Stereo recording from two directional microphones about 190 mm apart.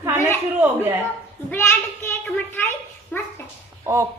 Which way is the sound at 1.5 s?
10° left (ahead or behind).